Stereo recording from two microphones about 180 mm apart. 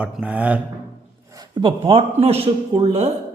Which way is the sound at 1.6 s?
30° right (ahead or behind).